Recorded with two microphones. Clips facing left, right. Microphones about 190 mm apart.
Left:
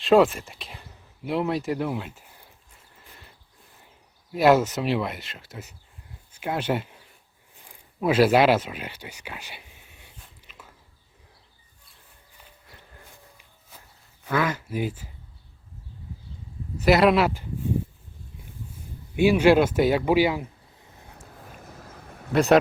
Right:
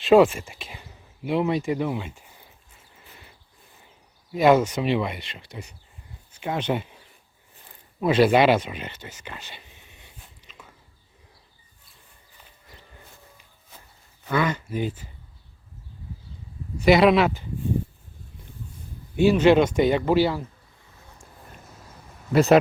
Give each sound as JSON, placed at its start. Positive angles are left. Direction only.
{"t": 0.0, "sound": "speech", "side_deg": 0}
{"t": 4.3, "sound": "speech", "side_deg": 5}
{"t": 7.6, "sound": "a sound", "side_deg": 10}
{"t": 13.3, "sound": "a sound", "side_deg": 10}
{"t": 14.3, "sound": "a man's voice", "side_deg": 5}
{"t": 16.7, "sound": "speech", "side_deg": 5}
{"t": 19.1, "sound": "a man's voice", "side_deg": 10}
{"t": 21.8, "sound": "a sound", "side_deg": 55}
{"t": 22.3, "sound": "speech", "side_deg": 0}